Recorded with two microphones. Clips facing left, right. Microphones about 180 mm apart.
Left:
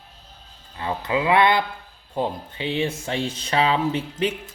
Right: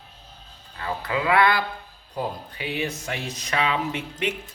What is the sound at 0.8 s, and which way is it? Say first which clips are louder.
Speech: left 3 dB; 25° left (ahead or behind).